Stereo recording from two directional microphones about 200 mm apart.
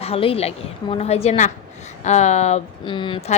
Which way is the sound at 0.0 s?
30° left (ahead or behind).